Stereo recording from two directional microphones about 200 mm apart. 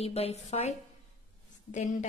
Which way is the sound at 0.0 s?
30° left (ahead or behind).